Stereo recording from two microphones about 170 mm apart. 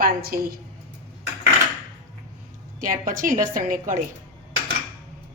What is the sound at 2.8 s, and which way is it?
A woman's voice, 50° right (ahead or behind).